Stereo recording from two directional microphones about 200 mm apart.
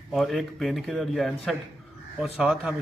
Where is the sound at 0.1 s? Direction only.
Centre (ahead or behind).